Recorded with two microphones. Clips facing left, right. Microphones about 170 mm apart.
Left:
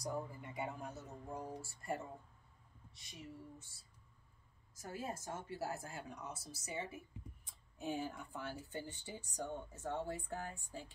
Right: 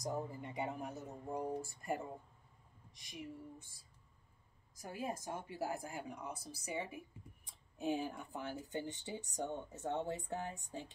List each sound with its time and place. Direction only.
0.0 s a woman's voice: 20° right (ahead or behind)